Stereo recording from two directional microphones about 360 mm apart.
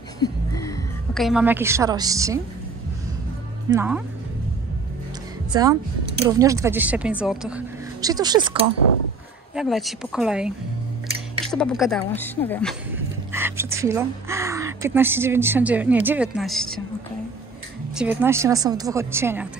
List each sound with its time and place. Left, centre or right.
0.2 s a sound: centre
3.7 s speech: centre
5.5 s speech: centre
9.6 s speech: centre
17.9 s speech: centre